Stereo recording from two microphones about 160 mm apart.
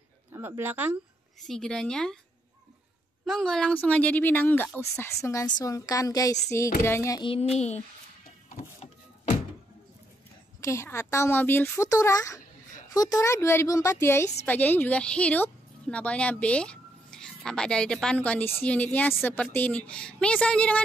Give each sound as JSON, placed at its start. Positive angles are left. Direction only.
{"t": 0.3, "sound": "speech", "side_deg": -15}
{"t": 1.5, "sound": "speech", "side_deg": 5}
{"t": 3.3, "sound": "a woman's voice", "side_deg": 5}
{"t": 7.2, "sound": "a child's voice", "side_deg": 40}
{"t": 10.6, "sound": "a woman's voice", "side_deg": 15}